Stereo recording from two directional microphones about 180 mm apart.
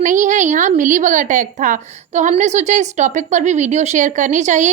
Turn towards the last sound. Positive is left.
turn(degrees=-40)  # may be behind; listen again after turning